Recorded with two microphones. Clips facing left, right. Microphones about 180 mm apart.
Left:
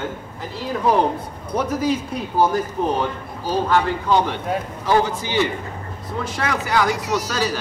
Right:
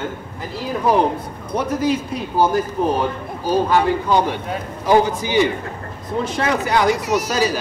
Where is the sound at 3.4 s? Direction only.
15° right (ahead or behind).